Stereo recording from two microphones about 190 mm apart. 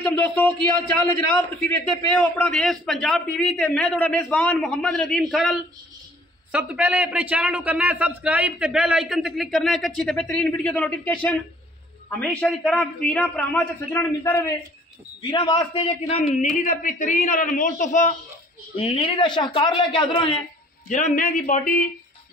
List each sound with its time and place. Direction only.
0.0 s a man's voice: 5° left (ahead or behind)
1.9 s a man's voice: 5° left (ahead or behind)
15.3 s a woman's voice: 25° left (ahead or behind)
20.9 s a man's voice: 40° left (ahead or behind)